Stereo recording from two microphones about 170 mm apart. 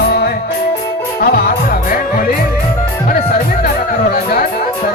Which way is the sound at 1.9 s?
55° left (ahead or behind).